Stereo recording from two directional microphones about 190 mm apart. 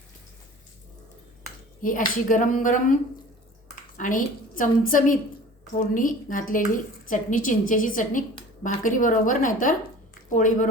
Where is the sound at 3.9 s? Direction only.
45° left (ahead or behind).